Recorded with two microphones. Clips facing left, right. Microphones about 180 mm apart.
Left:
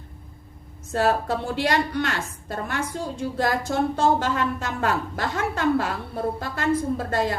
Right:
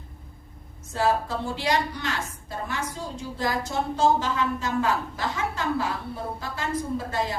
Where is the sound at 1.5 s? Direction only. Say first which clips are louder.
Left 3 dB; 60° left (ahead or behind).